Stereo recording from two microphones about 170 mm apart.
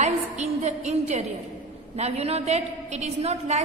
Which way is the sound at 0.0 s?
45° right (ahead or behind).